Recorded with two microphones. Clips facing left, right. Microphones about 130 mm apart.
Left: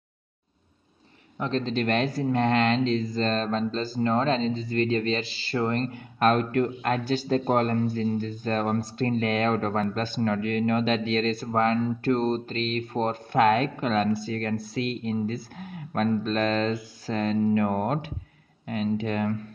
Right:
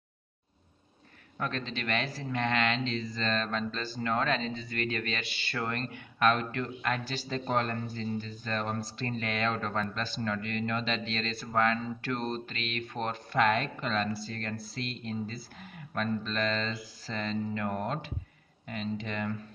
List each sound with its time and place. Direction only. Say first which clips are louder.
1.6 s speech: left 11 dB; 40° left (ahead or behind)
13.3 s speech: left 6 dB; 50° left (ahead or behind)